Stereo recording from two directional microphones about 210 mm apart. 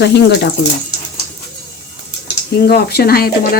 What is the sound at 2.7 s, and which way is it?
Speech, 50° left (ahead or behind).